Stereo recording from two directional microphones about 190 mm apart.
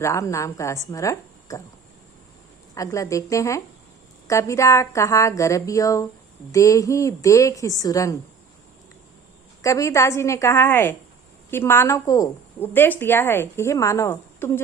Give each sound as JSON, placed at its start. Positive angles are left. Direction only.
{"t": 0.0, "sound": "a woman's voice", "side_deg": 15}
{"t": 2.7, "sound": "a woman's voice", "side_deg": 15}
{"t": 9.6, "sound": "a woman's voice", "side_deg": 15}